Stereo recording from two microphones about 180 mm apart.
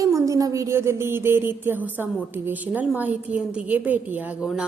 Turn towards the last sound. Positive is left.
turn(degrees=-5)  # may be behind; listen again after turning